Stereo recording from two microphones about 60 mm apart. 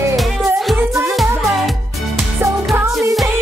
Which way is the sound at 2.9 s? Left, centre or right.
Centre.